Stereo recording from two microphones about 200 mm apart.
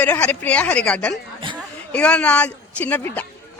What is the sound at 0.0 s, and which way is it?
Speech, 5° left (ahead or behind).